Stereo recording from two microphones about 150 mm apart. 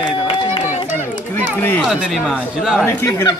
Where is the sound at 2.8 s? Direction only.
15° left (ahead or behind).